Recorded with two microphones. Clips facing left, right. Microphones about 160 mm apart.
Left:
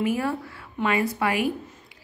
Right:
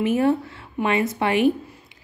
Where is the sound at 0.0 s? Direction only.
25° right (ahead or behind).